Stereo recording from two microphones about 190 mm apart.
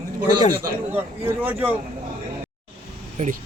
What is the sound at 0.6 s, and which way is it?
Speech, 10° right (ahead or behind).